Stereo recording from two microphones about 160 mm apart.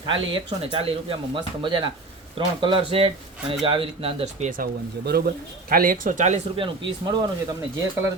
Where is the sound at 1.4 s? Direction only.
30° right (ahead or behind).